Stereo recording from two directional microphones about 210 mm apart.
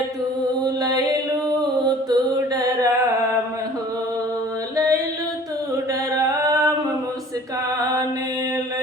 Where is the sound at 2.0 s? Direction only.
15° right (ahead or behind).